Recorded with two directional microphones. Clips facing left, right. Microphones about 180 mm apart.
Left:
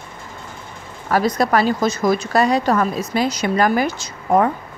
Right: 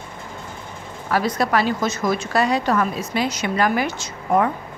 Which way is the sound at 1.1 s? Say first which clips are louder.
Left 3 dB; 45° left (ahead or behind).